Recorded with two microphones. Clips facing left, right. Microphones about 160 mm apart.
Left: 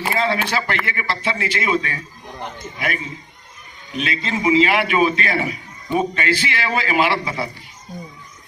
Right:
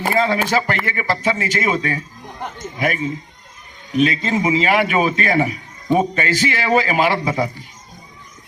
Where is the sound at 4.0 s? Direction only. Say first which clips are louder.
Right 7 dB; 40° right (ahead or behind).